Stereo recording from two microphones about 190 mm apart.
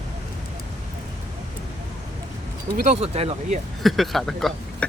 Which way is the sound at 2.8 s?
35° right (ahead or behind).